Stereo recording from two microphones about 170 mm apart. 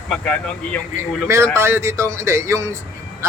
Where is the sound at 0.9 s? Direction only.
15° right (ahead or behind).